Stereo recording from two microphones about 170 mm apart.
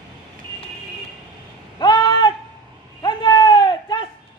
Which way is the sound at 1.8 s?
25° left (ahead or behind).